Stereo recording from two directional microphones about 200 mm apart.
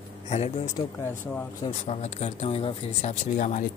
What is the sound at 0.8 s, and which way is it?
Speech, 25° left (ahead or behind).